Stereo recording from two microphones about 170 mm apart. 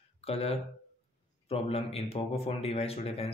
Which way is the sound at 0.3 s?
35° left (ahead or behind).